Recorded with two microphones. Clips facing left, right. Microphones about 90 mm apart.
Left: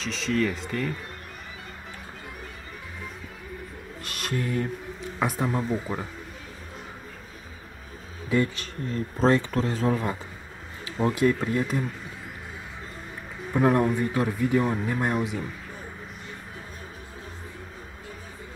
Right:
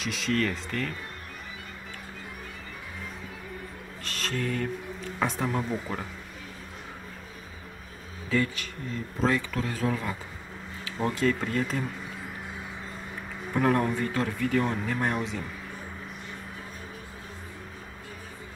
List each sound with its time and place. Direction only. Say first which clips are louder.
0.0 s speech: left 1 dB; 5° right (ahead or behind)
0.3 s speech: left 2 dB; 10° left (ahead or behind)
4.0 s a sound: left 1 dB; 15° left (ahead or behind)
5.2 s speech: left 2 dB; 10° left (ahead or behind)
8.3 s speech: left 3 dB; 20° left (ahead or behind)
8.9 s speech: left 5 dB; 35° left (ahead or behind)
11.1 s speech: left 4 dB; 15° left (ahead or behind)
13.6 s speech: left 3 dB; 15° left (ahead or behind)